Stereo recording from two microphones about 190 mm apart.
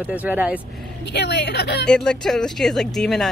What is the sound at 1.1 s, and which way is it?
Speech, 60° left (ahead or behind).